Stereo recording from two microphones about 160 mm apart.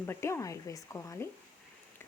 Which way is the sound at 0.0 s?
15° left (ahead or behind).